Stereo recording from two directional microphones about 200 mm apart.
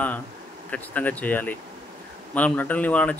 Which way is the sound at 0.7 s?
10° left (ahead or behind).